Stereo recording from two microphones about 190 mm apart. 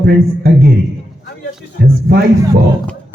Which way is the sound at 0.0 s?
55° right (ahead or behind).